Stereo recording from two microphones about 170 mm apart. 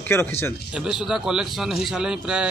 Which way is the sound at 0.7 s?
5° right (ahead or behind).